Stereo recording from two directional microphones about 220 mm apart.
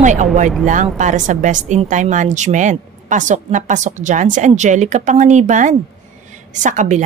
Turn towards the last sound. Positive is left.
turn(degrees=-35)  # may be behind; listen again after turning